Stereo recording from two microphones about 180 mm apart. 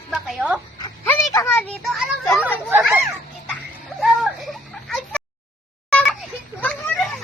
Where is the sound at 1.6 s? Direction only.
Centre (ahead or behind).